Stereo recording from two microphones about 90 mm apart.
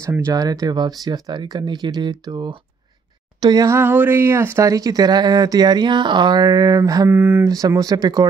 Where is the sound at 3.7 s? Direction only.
25° right (ahead or behind); by 7.1 s 45° right (ahead or behind).